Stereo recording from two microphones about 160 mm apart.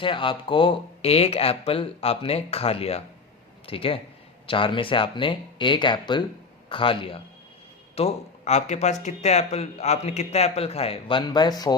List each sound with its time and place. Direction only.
0.0 s speech: 30° left (ahead or behind)
11.3 s speech: 25° left (ahead or behind)